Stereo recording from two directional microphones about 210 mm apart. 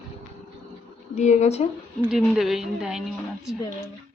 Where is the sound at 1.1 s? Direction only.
35° left (ahead or behind).